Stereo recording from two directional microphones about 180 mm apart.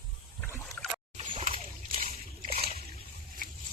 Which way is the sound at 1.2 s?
35° right (ahead or behind).